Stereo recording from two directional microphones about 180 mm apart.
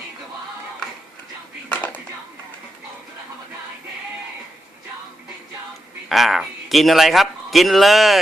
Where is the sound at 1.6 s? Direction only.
10° left (ahead or behind).